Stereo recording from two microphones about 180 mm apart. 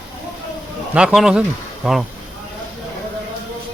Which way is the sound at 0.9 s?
5° right (ahead or behind).